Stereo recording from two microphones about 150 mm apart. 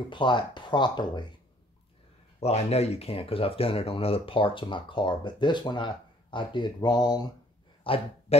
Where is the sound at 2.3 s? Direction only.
45° left (ahead or behind); by 7.3 s 25° left (ahead or behind).